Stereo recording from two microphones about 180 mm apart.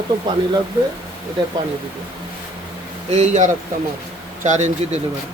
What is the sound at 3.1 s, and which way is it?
Speech, 40° right (ahead or behind).